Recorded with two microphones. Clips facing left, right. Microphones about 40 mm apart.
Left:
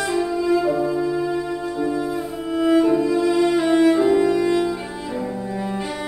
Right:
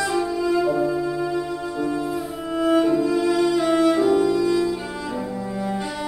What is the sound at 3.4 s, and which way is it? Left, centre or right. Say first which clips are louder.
Cello: left 1 dB; left.